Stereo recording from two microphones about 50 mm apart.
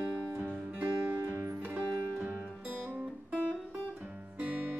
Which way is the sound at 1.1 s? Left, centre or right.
Right.